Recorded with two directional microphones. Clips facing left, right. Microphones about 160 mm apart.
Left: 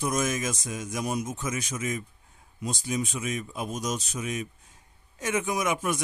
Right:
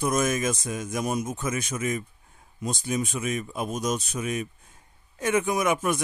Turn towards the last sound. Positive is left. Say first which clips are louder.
# right 3 dB
turn(degrees=-55)  # may be behind; listen again after turning